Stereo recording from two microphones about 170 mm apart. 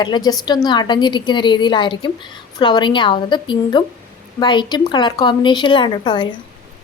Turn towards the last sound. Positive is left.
turn(degrees=25)  # may be behind; listen again after turning